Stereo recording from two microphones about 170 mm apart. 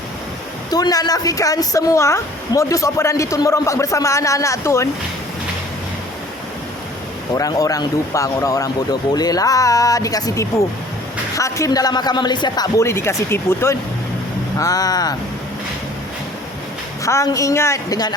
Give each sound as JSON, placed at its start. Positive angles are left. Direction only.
{"t": 0.7, "sound": "a woman's voice", "side_deg": 20}
{"t": 7.3, "sound": "a woman's voice", "side_deg": 20}
{"t": 17.0, "sound": "a woman's voice", "side_deg": 20}